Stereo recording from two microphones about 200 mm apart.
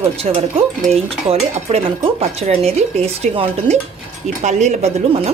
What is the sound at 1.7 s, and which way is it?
Speech, 30° right (ahead or behind).